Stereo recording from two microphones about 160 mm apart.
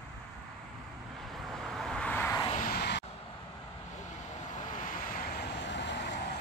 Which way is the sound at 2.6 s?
80° left.